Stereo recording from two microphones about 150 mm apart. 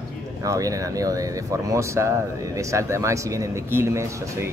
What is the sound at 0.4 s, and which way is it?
Speech, 20° right (ahead or behind).